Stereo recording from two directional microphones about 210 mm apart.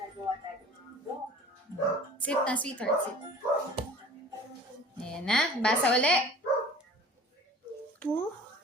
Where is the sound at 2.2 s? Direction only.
5° left (ahead or behind).